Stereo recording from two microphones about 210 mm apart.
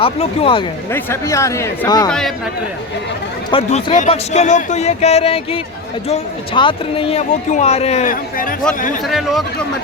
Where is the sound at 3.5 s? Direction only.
30° left (ahead or behind).